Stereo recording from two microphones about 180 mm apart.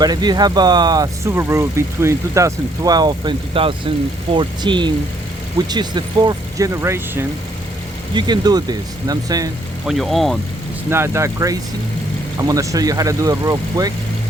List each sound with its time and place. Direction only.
0.0 s speech: 25° right (ahead or behind)
9.8 s speech: centre (ahead or behind)
10.8 s speech: 15° right (ahead or behind)